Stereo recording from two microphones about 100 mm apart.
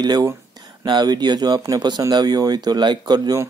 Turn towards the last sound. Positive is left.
turn(degrees=-45)  # may be behind; listen again after turning